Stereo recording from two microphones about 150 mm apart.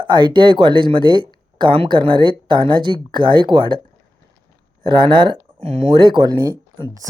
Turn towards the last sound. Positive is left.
turn(degrees=-25)  # may be behind; listen again after turning